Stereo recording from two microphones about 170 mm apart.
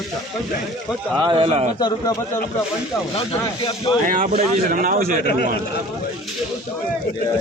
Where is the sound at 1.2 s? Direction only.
30° right (ahead or behind).